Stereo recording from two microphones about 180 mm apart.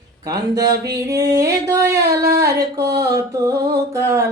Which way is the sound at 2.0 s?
65° right (ahead or behind).